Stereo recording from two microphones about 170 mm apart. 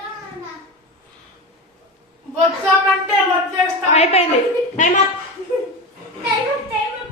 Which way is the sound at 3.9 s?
40° left (ahead or behind).